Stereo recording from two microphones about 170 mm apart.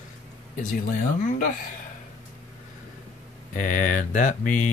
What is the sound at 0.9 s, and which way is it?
Mantra, 50° left (ahead or behind).